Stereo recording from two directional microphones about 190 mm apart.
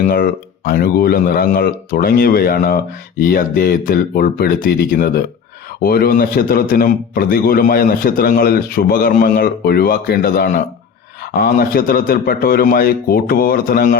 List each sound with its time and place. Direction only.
0.0 s a man's voice: 50° left (ahead or behind)